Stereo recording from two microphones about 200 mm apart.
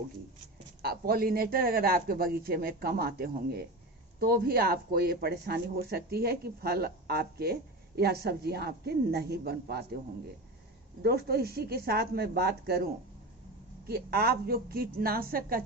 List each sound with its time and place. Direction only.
0.8 s speech: 50° right (ahead or behind)
11.0 s speech: 50° right (ahead or behind)